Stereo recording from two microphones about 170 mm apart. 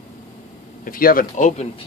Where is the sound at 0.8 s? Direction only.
55° left (ahead or behind).